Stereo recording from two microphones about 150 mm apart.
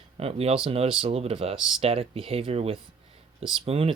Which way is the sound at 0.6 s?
40° right (ahead or behind).